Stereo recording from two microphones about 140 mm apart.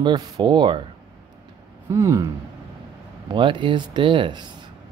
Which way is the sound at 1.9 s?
20° right (ahead or behind).